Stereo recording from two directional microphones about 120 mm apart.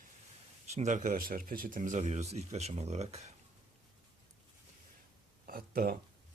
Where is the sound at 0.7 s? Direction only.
85° right; by 3.3 s 65° right (ahead or behind).